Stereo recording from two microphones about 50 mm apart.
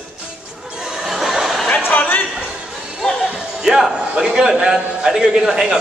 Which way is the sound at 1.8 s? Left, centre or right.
Left.